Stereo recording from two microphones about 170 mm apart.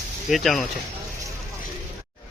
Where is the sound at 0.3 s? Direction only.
Centre (ahead or behind).